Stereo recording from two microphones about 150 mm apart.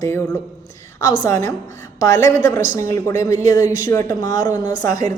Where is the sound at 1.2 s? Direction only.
20° left (ahead or behind).